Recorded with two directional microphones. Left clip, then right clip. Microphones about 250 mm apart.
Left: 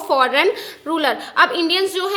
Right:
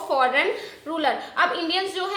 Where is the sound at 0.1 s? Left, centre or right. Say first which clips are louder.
Left 5 dB; left.